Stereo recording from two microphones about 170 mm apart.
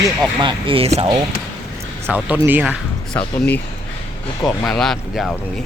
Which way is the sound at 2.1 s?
10° right (ahead or behind).